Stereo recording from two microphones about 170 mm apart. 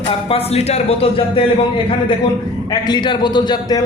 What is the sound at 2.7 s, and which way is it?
A man's voice, 25° left (ahead or behind).